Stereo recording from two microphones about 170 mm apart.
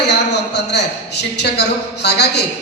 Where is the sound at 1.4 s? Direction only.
80° left.